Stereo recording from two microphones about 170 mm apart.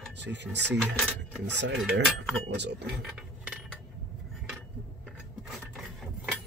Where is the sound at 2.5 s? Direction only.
85° right.